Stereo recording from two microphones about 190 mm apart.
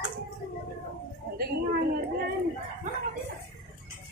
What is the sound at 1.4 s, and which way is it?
Speech, 50° right (ahead or behind).